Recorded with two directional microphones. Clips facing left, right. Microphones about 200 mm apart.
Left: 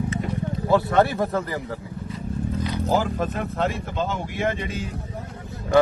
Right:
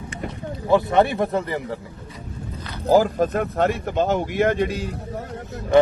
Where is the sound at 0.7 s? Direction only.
20° right (ahead or behind).